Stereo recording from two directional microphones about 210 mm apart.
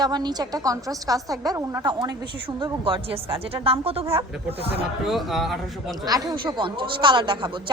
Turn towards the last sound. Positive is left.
turn(degrees=-20)  # may be behind; listen again after turning